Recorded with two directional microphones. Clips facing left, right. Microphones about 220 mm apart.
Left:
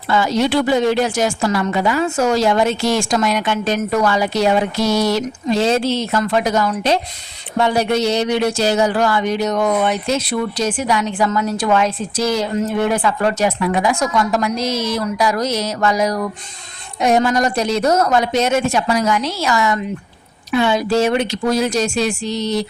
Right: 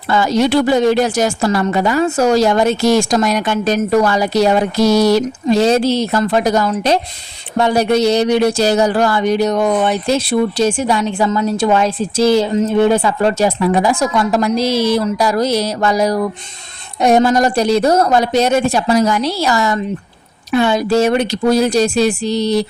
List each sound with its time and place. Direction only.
0.1 s a woman's voice: 40° right (ahead or behind)